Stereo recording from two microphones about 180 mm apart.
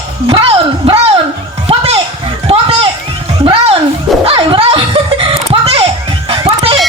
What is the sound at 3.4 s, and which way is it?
Music, 30° right (ahead or behind).